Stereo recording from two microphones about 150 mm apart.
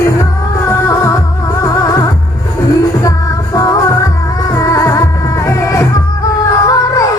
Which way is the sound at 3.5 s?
20° left (ahead or behind).